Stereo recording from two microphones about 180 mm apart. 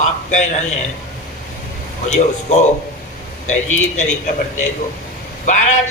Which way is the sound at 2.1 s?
40° left (ahead or behind).